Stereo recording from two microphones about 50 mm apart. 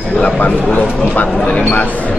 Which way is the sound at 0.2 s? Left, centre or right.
Left.